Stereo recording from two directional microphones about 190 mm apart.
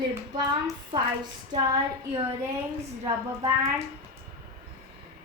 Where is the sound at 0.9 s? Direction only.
25° right (ahead or behind).